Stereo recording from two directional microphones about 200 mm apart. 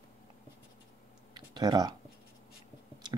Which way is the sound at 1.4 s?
20° right (ahead or behind).